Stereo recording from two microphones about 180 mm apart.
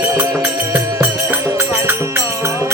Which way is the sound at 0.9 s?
15° right (ahead or behind).